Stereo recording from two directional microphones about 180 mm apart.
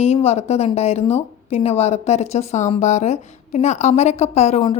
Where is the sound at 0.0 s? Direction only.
35° left (ahead or behind).